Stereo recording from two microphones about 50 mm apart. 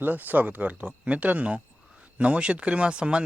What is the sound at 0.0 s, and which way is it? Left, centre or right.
Speech, right.